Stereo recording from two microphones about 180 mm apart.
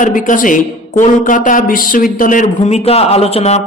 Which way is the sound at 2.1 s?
45° left (ahead or behind).